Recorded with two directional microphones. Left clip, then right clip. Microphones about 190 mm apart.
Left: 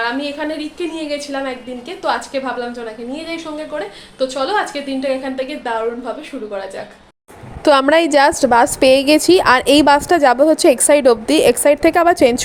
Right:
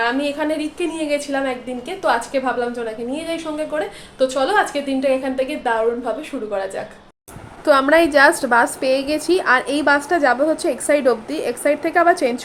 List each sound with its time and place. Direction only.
0.0 s a woman's voice: 5° right (ahead or behind)
7.6 s a woman's voice: 40° left (ahead or behind)